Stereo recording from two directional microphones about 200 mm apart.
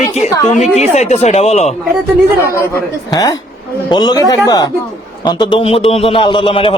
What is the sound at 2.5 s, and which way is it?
A man's voice, 15° left (ahead or behind).